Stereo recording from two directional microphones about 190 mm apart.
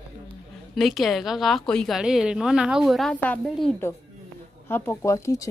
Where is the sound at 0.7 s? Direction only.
Centre (ahead or behind).